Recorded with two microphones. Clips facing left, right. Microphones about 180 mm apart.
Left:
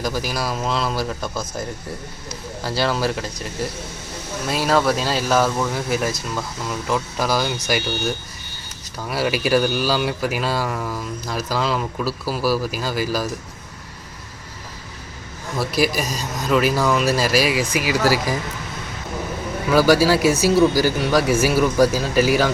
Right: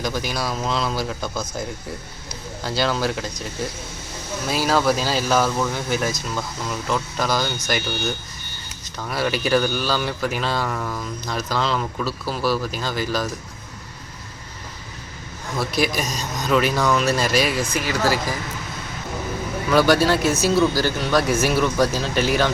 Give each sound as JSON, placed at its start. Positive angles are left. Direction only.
{"t": 0.0, "sound": "speech", "side_deg": 0}
{"t": 2.6, "sound": "speech", "side_deg": 0}
{"t": 15.5, "sound": "speech", "side_deg": 5}
{"t": 19.7, "sound": "speech", "side_deg": 5}